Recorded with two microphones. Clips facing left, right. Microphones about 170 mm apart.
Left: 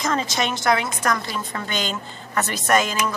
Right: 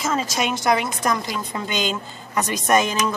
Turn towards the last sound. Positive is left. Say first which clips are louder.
# right 1 dB
turn(degrees=-20)  # may be behind; listen again after turning